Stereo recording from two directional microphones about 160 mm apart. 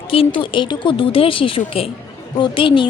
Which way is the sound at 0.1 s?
35° left (ahead or behind).